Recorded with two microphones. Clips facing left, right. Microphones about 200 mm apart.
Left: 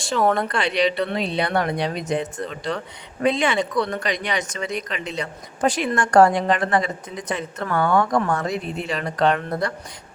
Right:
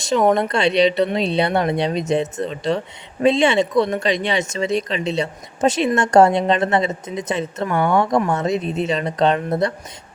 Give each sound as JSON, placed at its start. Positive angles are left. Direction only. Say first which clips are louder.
{"t": 0.0, "sound": "speech", "louder": "right 4 dB", "side_deg": -20}